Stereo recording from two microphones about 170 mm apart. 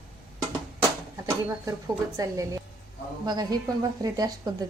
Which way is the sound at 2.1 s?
20° right (ahead or behind).